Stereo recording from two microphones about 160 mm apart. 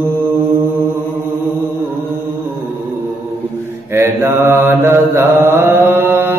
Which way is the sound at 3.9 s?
15° right (ahead or behind).